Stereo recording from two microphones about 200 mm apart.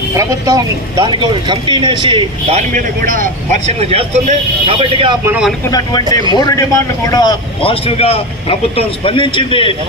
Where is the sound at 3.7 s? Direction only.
30° right (ahead or behind).